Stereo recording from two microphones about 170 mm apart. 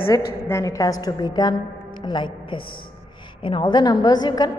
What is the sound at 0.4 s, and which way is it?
A woman's voice, 15° left (ahead or behind).